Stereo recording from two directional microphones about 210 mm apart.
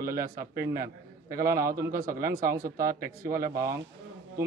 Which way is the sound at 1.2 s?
45° right (ahead or behind).